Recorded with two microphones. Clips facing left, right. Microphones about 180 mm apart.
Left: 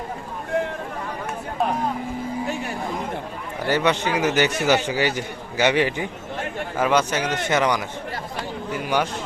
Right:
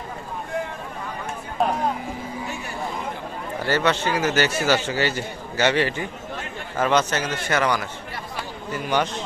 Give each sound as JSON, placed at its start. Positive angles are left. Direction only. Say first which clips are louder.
{"t": 3.7, "sound": "a man's voice", "louder": "left 1 dB", "side_deg": 15}